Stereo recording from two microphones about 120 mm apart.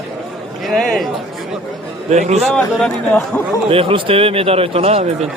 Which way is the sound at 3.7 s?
50° right (ahead or behind).